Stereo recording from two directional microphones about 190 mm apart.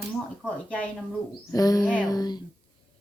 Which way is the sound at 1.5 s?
20° left (ahead or behind).